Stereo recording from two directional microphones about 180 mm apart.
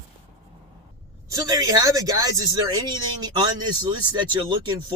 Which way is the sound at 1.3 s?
20° right (ahead or behind).